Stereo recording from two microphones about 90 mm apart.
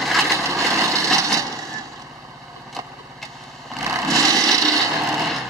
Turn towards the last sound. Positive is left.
turn(degrees=0)  # may be behind; listen again after turning